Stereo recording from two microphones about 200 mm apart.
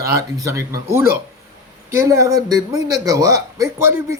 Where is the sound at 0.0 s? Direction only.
15° right (ahead or behind).